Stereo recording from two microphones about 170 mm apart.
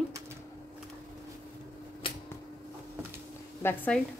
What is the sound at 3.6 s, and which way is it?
Speech, 10° left (ahead or behind).